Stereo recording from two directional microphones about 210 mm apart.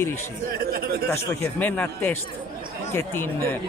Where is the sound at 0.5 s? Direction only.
45° right (ahead or behind).